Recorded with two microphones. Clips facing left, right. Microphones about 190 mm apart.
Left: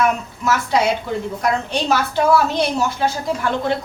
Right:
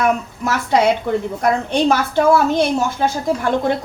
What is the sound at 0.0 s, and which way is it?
A woman's voice, 55° right (ahead or behind).